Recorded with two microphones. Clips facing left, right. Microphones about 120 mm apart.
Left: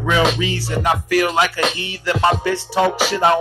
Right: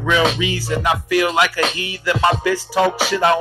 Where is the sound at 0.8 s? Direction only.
45° left (ahead or behind).